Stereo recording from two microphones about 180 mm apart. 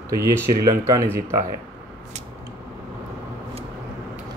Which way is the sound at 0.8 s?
15° right (ahead or behind).